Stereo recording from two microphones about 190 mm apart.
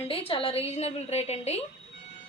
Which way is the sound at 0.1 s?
30° left (ahead or behind).